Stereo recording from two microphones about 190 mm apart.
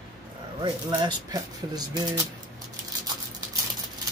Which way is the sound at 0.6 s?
25° right (ahead or behind).